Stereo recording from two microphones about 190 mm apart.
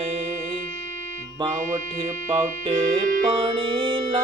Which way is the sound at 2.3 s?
25° right (ahead or behind).